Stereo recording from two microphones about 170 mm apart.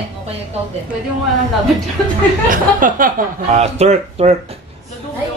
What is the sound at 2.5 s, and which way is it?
A man's voice, 55° right (ahead or behind).